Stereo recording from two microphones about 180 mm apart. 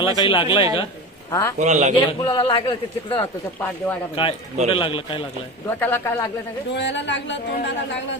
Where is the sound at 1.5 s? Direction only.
40° right (ahead or behind).